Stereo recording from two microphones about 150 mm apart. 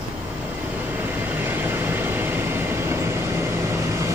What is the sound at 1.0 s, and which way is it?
Vehicle, 15° right (ahead or behind).